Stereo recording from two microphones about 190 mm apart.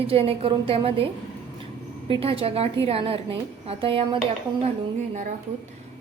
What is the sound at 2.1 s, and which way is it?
A woman's voice, 30° right (ahead or behind).